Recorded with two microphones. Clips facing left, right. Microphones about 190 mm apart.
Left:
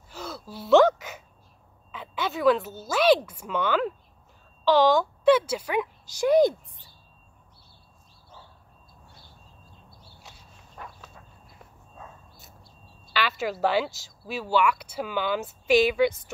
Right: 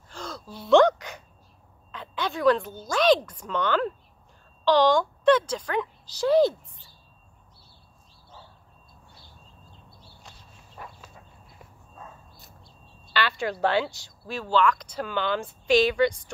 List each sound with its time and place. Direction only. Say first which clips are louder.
0.1 s gasp: left 1 dB; 5° left (ahead or behind)
1.9 s a woman's voice: even; 5° left (ahead or behind)
10.8 s a sound: even; 5° right (ahead or behind)
13.1 s speech: even; 5° left (ahead or behind)